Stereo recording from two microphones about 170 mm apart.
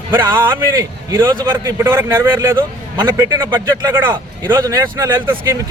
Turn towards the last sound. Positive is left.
turn(degrees=-15)  # may be behind; listen again after turning